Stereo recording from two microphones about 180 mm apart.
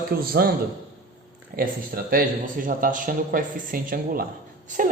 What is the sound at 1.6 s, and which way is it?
A man's voice, 55° right (ahead or behind).